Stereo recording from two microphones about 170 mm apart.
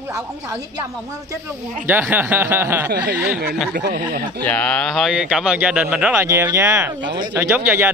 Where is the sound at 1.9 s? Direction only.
10° right (ahead or behind).